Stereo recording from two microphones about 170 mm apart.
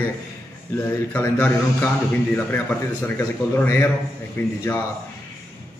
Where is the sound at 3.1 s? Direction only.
10° left (ahead or behind).